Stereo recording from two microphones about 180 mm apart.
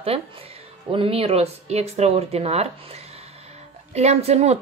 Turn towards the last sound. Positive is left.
turn(degrees=-35)  # may be behind; listen again after turning